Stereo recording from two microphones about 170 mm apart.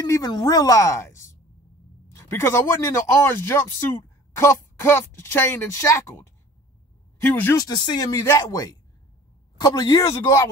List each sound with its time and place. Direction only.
0.0 s a woman's voice: 20° left (ahead or behind)
7.5 s a woman's voice: 25° left (ahead or behind)